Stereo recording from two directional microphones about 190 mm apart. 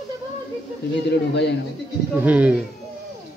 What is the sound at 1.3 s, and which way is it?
Speech, 65° left (ahead or behind).